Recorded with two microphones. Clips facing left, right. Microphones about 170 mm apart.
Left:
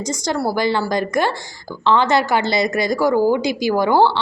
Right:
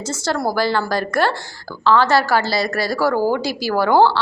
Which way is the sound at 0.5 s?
15° left (ahead or behind).